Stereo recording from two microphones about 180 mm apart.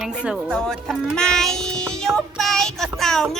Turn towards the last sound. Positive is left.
turn(degrees=0)  # may be behind; listen again after turning